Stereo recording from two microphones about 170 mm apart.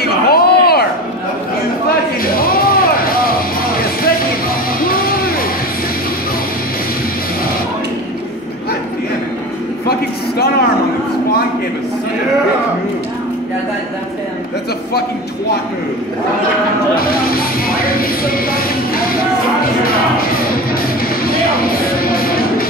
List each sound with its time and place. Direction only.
0.3 s a sound: 65° left (ahead or behind)
2.2 s music: 60° left (ahead or behind)
4.7 s music: 60° left (ahead or behind)
9.8 s a sound: 70° left (ahead or behind)
16.9 s music: 60° left (ahead or behind)
22.0 s music: 60° left (ahead or behind)